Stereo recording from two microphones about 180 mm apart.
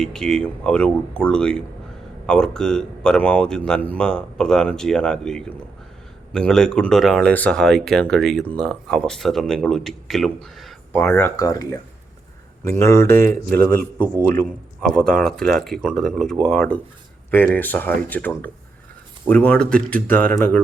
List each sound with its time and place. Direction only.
0.0 s speech: 5° left (ahead or behind)
11.0 s speech: 15° left (ahead or behind)
14.8 s speech: 5° left (ahead or behind)